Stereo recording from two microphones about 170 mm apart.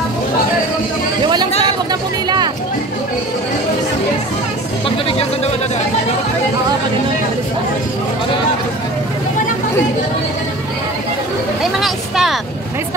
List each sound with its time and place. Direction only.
1.2 s chatter: 25° right (ahead or behind)
1.9 s a sound: 25° right (ahead or behind)
11.8 s vehicle: centre (ahead or behind)